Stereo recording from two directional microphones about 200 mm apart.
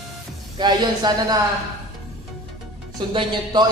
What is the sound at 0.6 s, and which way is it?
Speech, 20° right (ahead or behind).